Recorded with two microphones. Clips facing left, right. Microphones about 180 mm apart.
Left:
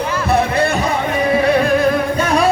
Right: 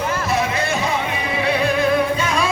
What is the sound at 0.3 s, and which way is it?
Music, 60° left (ahead or behind).